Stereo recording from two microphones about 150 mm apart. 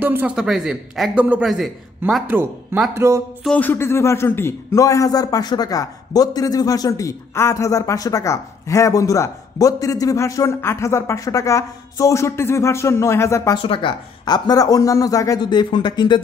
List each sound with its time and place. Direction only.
0.0 s speech: 10° right (ahead or behind)
0.5 s a man's voice: centre (ahead or behind)
2.2 s speech: 10° right (ahead or behind)
3.4 s a man's voice: 10° left (ahead or behind)
13.6 s a man's voice: 35° left (ahead or behind)